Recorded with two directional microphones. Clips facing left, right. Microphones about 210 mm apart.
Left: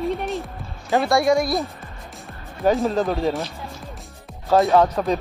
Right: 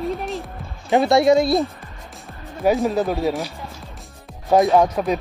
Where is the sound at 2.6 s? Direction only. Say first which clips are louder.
Right 1 dB; 10° right (ahead or behind).